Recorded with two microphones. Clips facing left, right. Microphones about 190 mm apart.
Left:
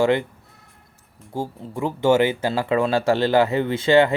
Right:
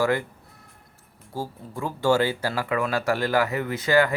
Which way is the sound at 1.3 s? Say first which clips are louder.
Left 4 dB; 20° left (ahead or behind).